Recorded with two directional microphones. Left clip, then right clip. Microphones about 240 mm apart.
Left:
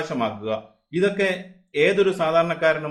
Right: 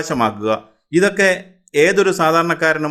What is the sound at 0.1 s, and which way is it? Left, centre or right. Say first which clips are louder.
A man's voice: right 8 dB; right.